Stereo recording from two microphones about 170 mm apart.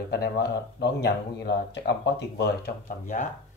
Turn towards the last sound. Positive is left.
turn(degrees=45)  # may be behind; listen again after turning